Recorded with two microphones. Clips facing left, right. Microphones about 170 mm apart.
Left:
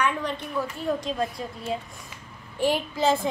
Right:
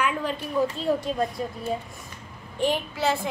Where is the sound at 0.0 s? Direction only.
5° right (ahead or behind).